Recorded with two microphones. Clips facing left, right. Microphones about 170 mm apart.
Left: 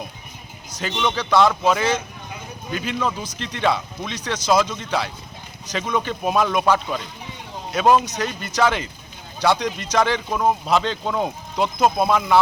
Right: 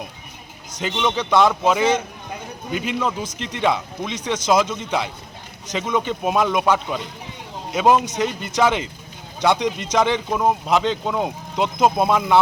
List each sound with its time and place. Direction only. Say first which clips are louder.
0.8 s a man's voice: right 2 dB; 15° right (ahead or behind)